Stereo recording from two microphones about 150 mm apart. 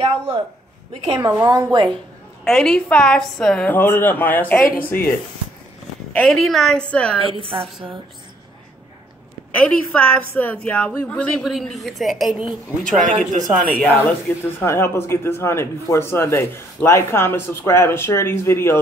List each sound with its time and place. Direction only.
1.0 s a woman's voice: 30° right (ahead or behind)
2.4 s speech: 5° left (ahead or behind)
6.1 s a woman's voice: centre (ahead or behind)
7.3 s a woman's voice: 35° right (ahead or behind)
9.5 s speech: 10° left (ahead or behind)
13.0 s speech: 55° right (ahead or behind)
13.6 s speech: 10° left (ahead or behind)